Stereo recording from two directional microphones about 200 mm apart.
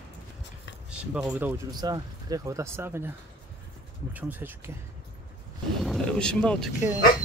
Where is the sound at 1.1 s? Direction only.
5° right (ahead or behind).